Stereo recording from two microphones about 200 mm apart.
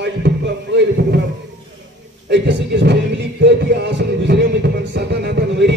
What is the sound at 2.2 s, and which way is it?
Speech, 60° right (ahead or behind).